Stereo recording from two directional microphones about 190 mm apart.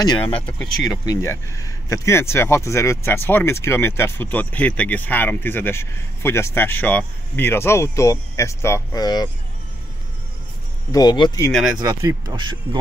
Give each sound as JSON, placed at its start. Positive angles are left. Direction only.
{"t": 0.0, "sound": "speech", "side_deg": 25}
{"t": 0.4, "sound": "speech", "side_deg": 5}
{"t": 1.0, "sound": "speech", "side_deg": 15}
{"t": 10.9, "sound": "speech", "side_deg": 20}
{"t": 11.8, "sound": "speech", "side_deg": -15}